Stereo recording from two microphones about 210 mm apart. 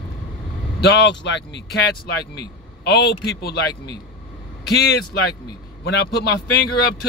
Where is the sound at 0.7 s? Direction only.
55° left (ahead or behind).